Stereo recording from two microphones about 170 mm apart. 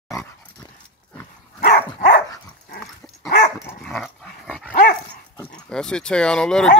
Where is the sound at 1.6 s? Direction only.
60° left (ahead or behind).